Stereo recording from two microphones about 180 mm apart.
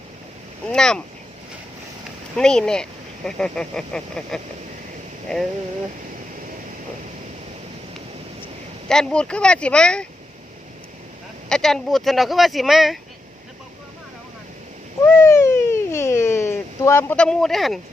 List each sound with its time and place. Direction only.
0.7 s speech: 5° left (ahead or behind)
2.3 s speech: 5° left (ahead or behind)
8.9 s speech: 5° left (ahead or behind)
11.4 s speech: 5° left (ahead or behind)
15.0 s a sound: 15° left (ahead or behind)